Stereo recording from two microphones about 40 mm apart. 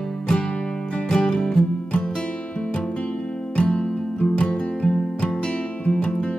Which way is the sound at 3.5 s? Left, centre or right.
Left.